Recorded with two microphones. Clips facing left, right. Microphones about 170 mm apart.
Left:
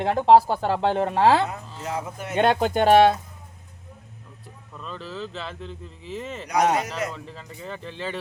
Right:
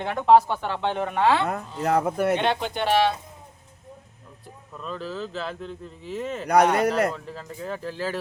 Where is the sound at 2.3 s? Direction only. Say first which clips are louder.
Left 4 dB; 45° left (ahead or behind).